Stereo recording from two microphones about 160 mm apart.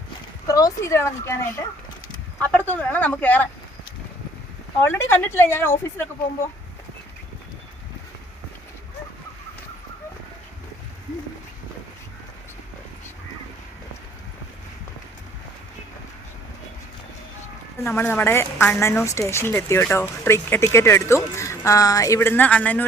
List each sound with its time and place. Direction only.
0.4 s a woman's voice: 20° left (ahead or behind)
4.8 s a woman's voice: 15° left (ahead or behind)
17.7 s a woman's voice: 15° left (ahead or behind)